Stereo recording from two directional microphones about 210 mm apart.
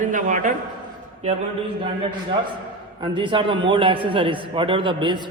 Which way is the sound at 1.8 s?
25° right (ahead or behind).